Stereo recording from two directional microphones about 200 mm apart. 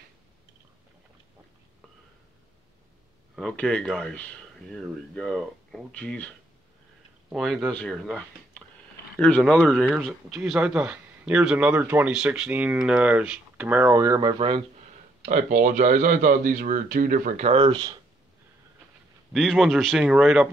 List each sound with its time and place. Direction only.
3.3 s speech: 5° left (ahead or behind); by 14.3 s 15° right (ahead or behind)
15.2 s speech: 40° right (ahead or behind); by 17.9 s 25° right (ahead or behind)
19.3 s speech: centre (ahead or behind)